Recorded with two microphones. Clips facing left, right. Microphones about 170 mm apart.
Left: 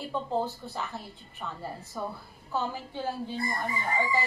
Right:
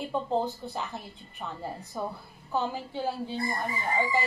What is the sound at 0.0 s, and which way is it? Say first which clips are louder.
Speech: right 2 dB; 20° right (ahead or behind).